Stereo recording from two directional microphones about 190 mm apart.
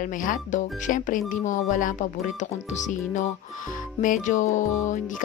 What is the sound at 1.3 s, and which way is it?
Music, 40° left (ahead or behind).